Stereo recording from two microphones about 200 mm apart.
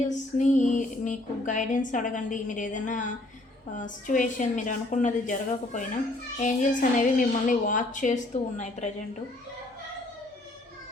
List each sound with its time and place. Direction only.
0.3 s a woman's voice: 40° left (ahead or behind)